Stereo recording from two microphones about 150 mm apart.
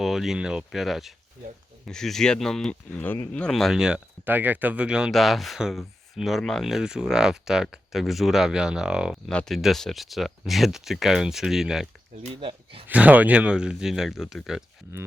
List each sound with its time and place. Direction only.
0.0 s speech: centre (ahead or behind)
12.3 s speech: 35° right (ahead or behind)
12.9 s speech: 10° right (ahead or behind)